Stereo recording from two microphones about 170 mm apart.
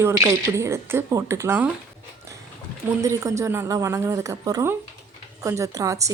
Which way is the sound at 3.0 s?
20° right (ahead or behind).